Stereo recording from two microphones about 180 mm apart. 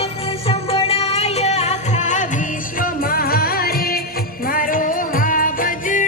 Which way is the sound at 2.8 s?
55° left (ahead or behind).